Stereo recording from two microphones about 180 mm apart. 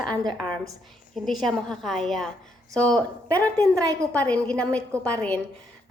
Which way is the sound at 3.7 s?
20° right (ahead or behind).